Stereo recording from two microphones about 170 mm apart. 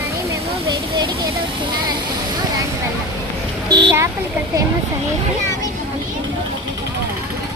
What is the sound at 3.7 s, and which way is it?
Speech, 25° right (ahead or behind).